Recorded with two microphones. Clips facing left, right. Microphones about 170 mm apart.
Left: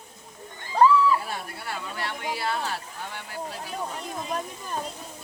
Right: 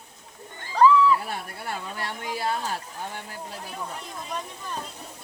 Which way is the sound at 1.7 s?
45° right (ahead or behind).